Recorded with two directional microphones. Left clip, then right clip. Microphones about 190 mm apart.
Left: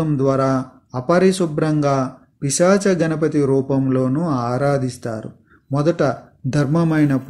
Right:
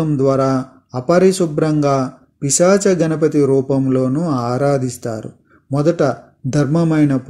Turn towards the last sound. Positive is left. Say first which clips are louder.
# right 2 dB
turn(degrees=-40)  # may be behind; listen again after turning